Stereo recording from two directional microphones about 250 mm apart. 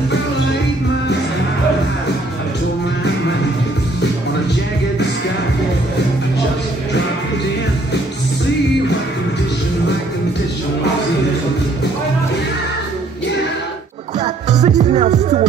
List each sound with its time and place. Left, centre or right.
14.2 s music: right